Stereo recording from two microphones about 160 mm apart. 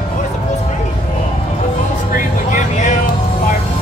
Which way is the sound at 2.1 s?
55° left (ahead or behind).